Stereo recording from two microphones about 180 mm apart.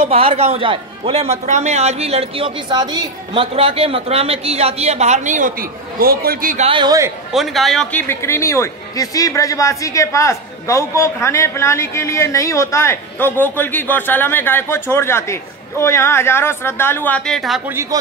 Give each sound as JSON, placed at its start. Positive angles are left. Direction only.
{"t": 0.0, "sound": "a man's voice", "side_deg": -30}
{"t": 6.6, "sound": "a man's voice", "side_deg": -25}
{"t": 7.3, "sound": "a man's voice", "side_deg": 0}